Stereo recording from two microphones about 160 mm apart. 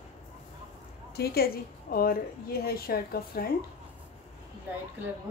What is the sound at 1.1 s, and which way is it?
A woman's voice, 80° left.